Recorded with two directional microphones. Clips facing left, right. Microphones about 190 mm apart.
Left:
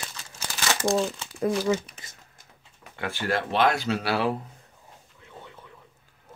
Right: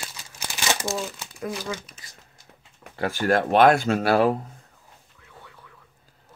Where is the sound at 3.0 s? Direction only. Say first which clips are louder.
Right 6 dB; 45° right (ahead or behind).